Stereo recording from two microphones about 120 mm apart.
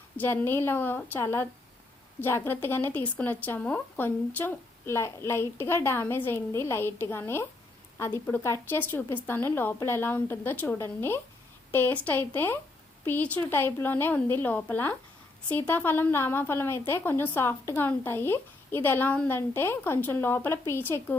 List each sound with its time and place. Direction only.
0.2 s a woman's voice: 20° left (ahead or behind)